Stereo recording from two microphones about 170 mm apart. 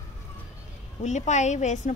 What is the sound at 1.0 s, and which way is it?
Speech, 45° left (ahead or behind).